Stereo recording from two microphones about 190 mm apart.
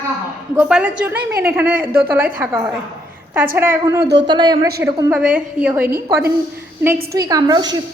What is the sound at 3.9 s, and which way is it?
Speech, 60° right (ahead or behind).